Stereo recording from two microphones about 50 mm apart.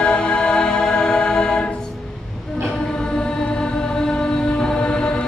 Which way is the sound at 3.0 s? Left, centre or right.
Centre.